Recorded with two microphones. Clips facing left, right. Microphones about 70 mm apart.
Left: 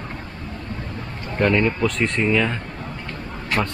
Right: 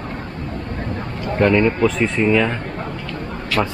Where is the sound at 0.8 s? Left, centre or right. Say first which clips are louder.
Right 6 dB; right.